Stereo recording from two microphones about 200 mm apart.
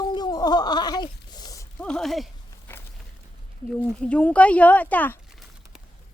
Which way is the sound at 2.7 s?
10° left (ahead or behind).